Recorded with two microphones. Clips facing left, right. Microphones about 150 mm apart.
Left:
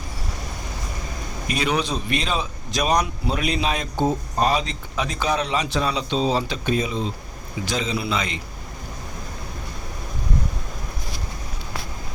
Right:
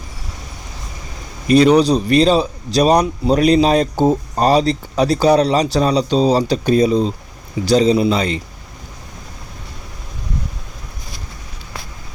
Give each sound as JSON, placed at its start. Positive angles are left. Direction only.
{"t": 1.5, "sound": "a man's voice", "side_deg": -35}